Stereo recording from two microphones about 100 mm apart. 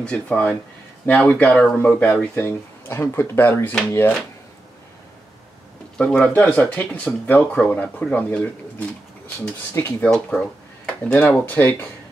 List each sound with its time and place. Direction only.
0.0 s speech: 15° left (ahead or behind)
5.9 s speech: 10° left (ahead or behind)
10.0 s speech: 10° left (ahead or behind)